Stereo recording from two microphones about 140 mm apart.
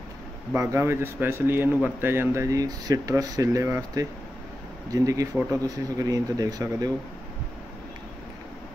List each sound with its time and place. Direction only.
0.6 s speech: 20° right (ahead or behind)